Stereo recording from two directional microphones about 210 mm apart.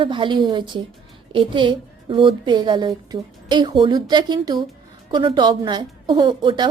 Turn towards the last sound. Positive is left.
turn(degrees=-20)  # may be behind; listen again after turning